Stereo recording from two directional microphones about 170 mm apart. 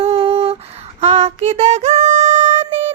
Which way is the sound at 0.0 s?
35° right (ahead or behind).